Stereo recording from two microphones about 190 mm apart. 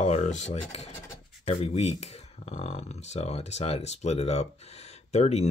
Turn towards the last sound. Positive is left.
turn(degrees=35)  # may be behind; listen again after turning